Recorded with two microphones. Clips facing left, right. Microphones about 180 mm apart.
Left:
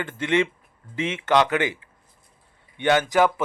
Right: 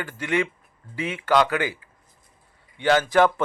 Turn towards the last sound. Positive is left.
turn(degrees=10)  # may be behind; listen again after turning